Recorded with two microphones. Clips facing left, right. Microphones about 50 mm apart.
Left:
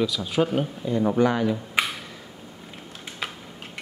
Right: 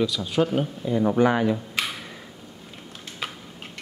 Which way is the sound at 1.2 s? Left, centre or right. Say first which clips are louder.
Right 2 dB; right.